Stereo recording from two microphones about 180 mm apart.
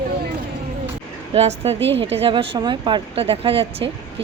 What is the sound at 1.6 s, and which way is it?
A woman's voice, 30° right (ahead or behind).